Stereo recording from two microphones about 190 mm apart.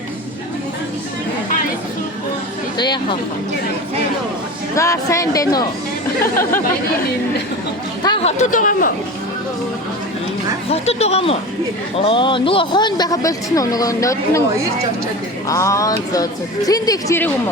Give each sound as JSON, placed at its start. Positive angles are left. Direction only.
{"t": 2.7, "sound": "speech", "side_deg": 25}
{"t": 4.7, "sound": "speech", "side_deg": 15}
{"t": 8.0, "sound": "speech", "side_deg": 30}
{"t": 10.7, "sound": "speech", "side_deg": 35}
{"t": 15.4, "sound": "speech", "side_deg": 15}